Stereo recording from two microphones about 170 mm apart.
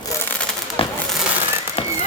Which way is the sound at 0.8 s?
35° left (ahead or behind).